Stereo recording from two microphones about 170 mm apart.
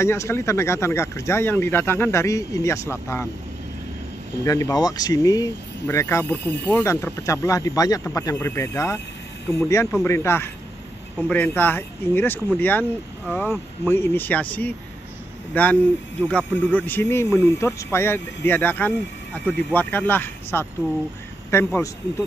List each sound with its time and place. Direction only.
0.0 s speech: 15° left (ahead or behind)
4.5 s speech: 20° left (ahead or behind)
13.8 s speech: 15° left (ahead or behind)